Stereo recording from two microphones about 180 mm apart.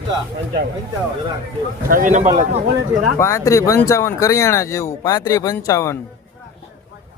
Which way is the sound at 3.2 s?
15° left (ahead or behind).